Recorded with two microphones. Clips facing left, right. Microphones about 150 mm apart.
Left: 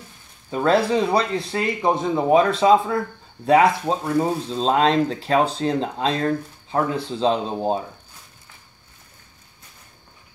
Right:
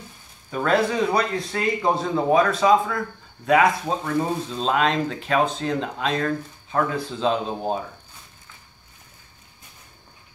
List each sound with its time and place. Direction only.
0.5 s speech: 30° left (ahead or behind)
3.8 s speech: 15° left (ahead or behind)
4.5 s speech: 30° left (ahead or behind)